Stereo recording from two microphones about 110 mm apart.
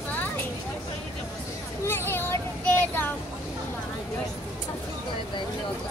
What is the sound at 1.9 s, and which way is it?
Child singing, 20° left (ahead or behind).